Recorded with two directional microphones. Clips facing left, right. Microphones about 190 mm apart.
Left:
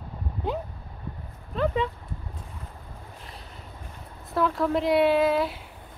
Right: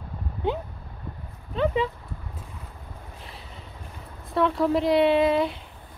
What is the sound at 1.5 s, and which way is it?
Dog, centre (ahead or behind).